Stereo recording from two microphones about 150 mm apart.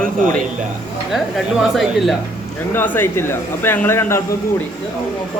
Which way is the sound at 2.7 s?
15° left (ahead or behind).